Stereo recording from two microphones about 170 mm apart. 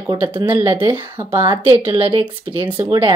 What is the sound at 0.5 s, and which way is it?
Speech, 30° right (ahead or behind).